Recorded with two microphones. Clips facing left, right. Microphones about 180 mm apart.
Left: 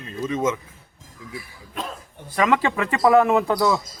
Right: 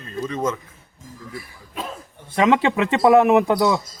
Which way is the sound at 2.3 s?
25° right (ahead or behind).